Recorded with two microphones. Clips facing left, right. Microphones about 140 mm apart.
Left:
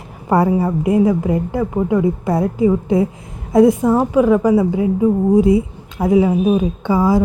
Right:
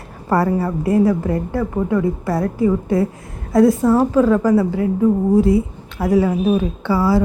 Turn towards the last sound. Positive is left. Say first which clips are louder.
# left 2 dB
turn(degrees=15)  # may be behind; listen again after turning